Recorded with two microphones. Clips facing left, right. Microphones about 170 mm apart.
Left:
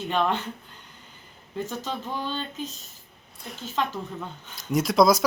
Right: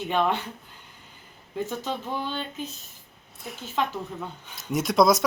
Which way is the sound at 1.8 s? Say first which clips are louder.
Right 1 dB; 10° right (ahead or behind).